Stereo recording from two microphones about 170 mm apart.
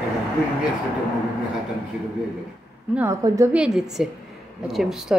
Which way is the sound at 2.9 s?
15° right (ahead or behind).